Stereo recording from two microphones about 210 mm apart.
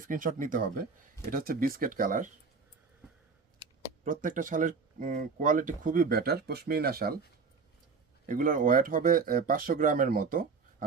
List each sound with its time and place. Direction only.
0.0 s speech: 40° right (ahead or behind)
4.0 s speech: 40° right (ahead or behind)
8.3 s speech: 40° right (ahead or behind)